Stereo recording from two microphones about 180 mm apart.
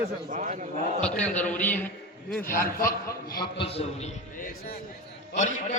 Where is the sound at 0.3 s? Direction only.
45° right (ahead or behind).